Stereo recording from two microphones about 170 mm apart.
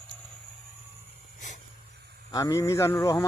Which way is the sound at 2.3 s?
20° left (ahead or behind).